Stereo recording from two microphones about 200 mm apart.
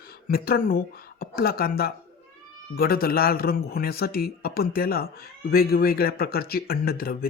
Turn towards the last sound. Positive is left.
turn(degrees=50)  # may be behind; listen again after turning